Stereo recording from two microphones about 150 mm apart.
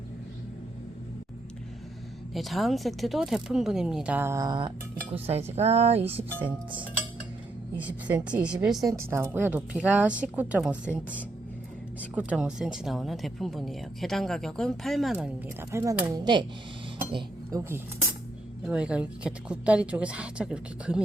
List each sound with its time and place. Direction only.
2.3 s speech: centre (ahead or behind); by 4.5 s 20° right (ahead or behind)
5.1 s speech: 40° right (ahead or behind)
7.8 s a woman's voice: 10° right (ahead or behind)
8.8 s a woman's voice: 20° right (ahead or behind); by 15.3 s centre (ahead or behind)
15.7 s speech: 20° right (ahead or behind)
17.6 s a woman's voice: 15° right (ahead or behind)